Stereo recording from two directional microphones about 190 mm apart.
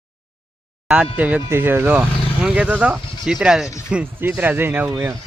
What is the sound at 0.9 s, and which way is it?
Speech, 5° right (ahead or behind).